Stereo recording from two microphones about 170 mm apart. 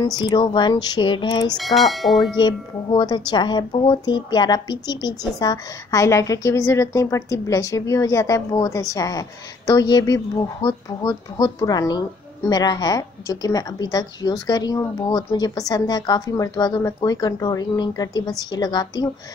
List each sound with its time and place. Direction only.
0.0 s a woman's voice: 25° left (ahead or behind)
1.6 s speech: centre (ahead or behind)
2.3 s a woman's voice: 25° left (ahead or behind)